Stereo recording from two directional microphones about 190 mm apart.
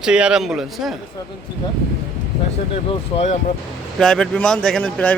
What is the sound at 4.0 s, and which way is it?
Speech, 5° left (ahead or behind).